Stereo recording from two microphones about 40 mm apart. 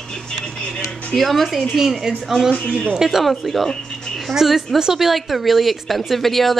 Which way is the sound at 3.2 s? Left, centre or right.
Centre.